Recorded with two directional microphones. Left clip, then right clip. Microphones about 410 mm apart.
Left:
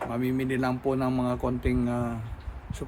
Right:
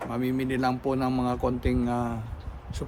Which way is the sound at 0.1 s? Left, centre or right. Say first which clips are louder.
Right 3 dB; centre.